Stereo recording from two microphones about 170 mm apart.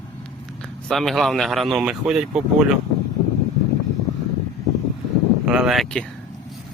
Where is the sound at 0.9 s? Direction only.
Centre (ahead or behind).